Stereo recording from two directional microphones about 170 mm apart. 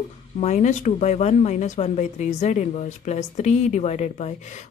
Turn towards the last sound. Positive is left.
turn(degrees=45)  # may be behind; listen again after turning